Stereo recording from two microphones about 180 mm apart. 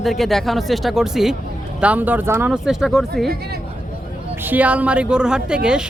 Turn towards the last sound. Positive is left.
turn(degrees=-5)  # may be behind; listen again after turning